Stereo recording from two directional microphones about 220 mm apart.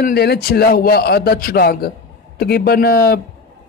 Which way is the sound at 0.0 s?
45° left (ahead or behind).